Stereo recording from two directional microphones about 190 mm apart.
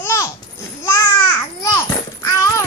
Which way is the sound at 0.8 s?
15° left (ahead or behind).